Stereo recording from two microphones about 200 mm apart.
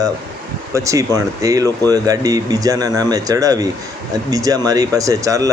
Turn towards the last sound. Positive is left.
turn(degrees=-15)  # may be behind; listen again after turning